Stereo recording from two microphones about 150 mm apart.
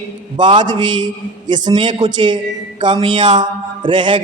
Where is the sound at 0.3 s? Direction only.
30° right (ahead or behind).